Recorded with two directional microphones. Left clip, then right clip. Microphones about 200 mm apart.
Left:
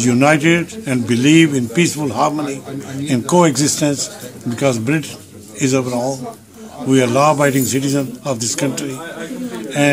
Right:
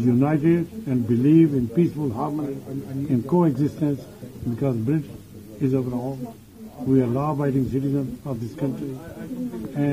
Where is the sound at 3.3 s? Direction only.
25° left (ahead or behind).